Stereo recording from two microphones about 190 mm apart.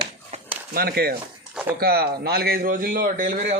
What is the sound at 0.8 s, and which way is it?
A man's voice, 55° right (ahead or behind).